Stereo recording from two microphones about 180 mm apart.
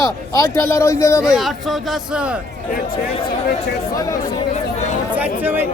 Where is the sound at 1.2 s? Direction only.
5° right (ahead or behind).